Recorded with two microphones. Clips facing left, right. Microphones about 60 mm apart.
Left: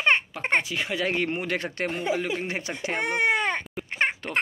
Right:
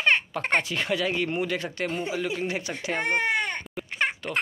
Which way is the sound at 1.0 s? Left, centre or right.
Left.